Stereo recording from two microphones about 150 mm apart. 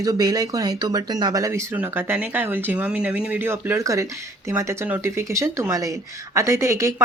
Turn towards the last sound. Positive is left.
turn(degrees=-20)  # may be behind; listen again after turning